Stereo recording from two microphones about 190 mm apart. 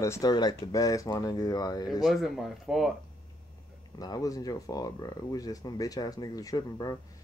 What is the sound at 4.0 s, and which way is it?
Speech, 20° left (ahead or behind).